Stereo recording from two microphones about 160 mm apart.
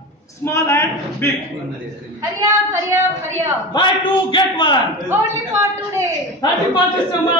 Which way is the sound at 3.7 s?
30° left (ahead or behind).